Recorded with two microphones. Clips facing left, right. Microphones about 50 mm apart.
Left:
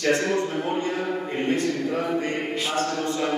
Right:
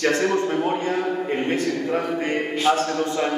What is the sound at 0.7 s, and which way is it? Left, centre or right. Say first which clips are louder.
Speech: right 3 dB; right.